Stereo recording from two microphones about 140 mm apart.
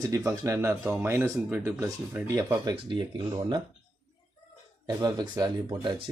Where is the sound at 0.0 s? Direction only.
25° right (ahead or behind).